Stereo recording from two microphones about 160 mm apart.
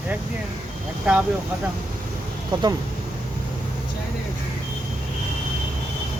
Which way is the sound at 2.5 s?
25° right (ahead or behind).